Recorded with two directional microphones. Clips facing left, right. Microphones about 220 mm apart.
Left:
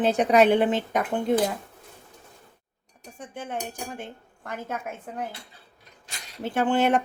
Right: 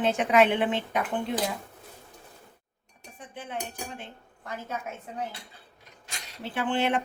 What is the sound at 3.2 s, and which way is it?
Speech, 45° left (ahead or behind).